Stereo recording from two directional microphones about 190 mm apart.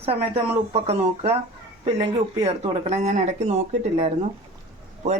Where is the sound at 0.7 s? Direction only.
35° right (ahead or behind).